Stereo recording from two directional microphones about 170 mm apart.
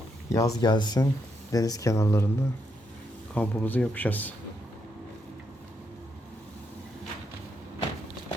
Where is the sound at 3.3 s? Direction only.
10° left (ahead or behind).